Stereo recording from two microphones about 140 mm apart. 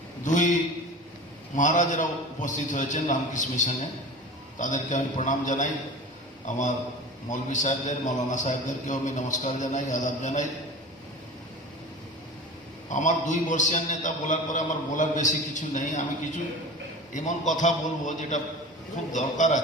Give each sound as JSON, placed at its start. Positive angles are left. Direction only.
{"t": 0.3, "sound": "a sound", "side_deg": 65}
{"t": 1.5, "sound": "a man's voice", "side_deg": 65}
{"t": 12.9, "sound": "a man's voice", "side_deg": 65}